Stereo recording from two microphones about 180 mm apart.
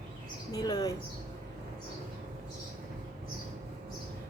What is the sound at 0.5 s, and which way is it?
Speech, 20° left (ahead or behind).